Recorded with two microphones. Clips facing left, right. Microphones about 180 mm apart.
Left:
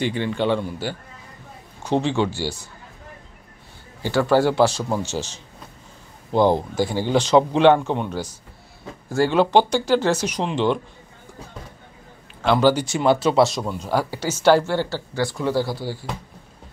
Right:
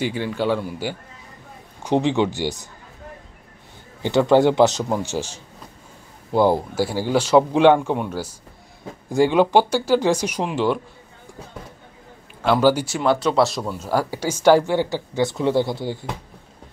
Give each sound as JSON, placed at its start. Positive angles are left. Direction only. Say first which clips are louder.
{"t": 0.0, "sound": "speech", "louder": "left 1 dB", "side_deg": -5}
{"t": 4.0, "sound": "a man's voice", "louder": "right 3 dB", "side_deg": -20}
{"t": 12.4, "sound": "speech", "louder": "even", "side_deg": -10}